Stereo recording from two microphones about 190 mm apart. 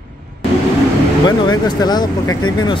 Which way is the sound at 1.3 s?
20° left (ahead or behind).